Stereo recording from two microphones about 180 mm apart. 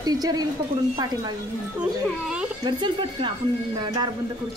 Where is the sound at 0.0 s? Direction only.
20° right (ahead or behind).